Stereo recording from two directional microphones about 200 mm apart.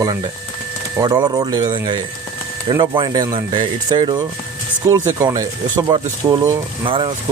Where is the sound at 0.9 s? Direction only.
20° right (ahead or behind).